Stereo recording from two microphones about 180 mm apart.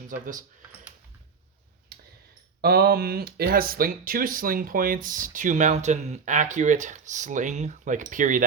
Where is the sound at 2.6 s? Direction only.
60° right (ahead or behind).